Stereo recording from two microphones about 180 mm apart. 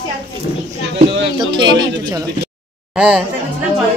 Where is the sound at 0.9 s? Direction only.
25° right (ahead or behind).